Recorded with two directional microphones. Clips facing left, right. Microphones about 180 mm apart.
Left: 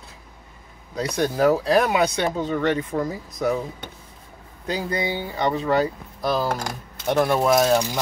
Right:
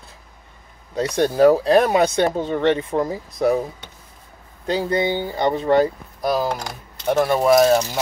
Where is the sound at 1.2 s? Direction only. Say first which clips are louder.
Right 5 dB; 30° right (ahead or behind).